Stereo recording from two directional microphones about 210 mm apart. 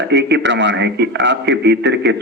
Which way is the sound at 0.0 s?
55° right (ahead or behind).